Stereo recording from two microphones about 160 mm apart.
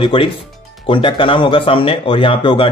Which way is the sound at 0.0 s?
35° left (ahead or behind).